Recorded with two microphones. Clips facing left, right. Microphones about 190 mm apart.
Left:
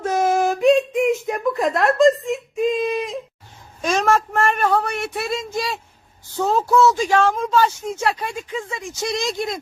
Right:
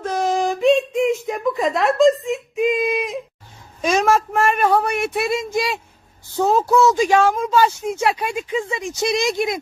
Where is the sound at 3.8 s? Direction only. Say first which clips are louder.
Right 2 dB; 10° right (ahead or behind).